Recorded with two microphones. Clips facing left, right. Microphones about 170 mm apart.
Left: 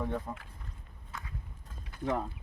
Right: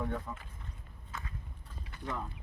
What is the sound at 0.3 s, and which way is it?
Speech, 30° left (ahead or behind).